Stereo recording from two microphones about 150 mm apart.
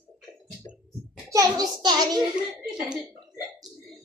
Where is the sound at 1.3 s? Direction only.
25° right (ahead or behind).